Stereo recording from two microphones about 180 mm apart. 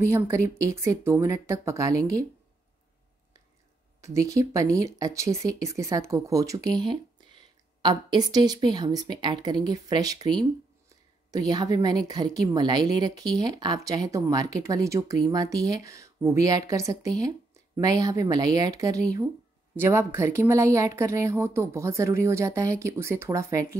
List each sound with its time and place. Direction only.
0.1 s speech: 15° right (ahead or behind)
4.0 s speech: 15° right (ahead or behind)